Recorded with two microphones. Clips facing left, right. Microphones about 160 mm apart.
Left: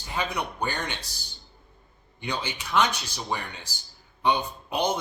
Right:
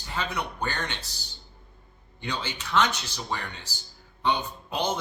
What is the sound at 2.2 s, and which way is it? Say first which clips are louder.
Speech: left 1 dB; 15° left (ahead or behind).